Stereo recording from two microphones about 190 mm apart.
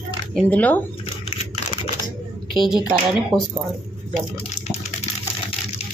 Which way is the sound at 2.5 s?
Centre (ahead or behind).